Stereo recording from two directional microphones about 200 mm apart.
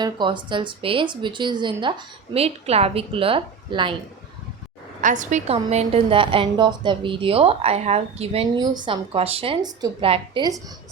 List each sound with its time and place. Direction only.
0.0 s a woman's voice: 25° right (ahead or behind)
4.9 s a woman's voice: 40° right (ahead or behind); by 10.6 s 20° right (ahead or behind)